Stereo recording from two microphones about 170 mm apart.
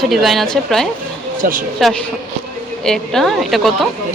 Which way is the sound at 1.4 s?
50° right (ahead or behind).